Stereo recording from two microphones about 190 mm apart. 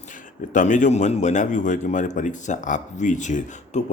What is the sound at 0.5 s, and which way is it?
Speech, 40° left (ahead or behind).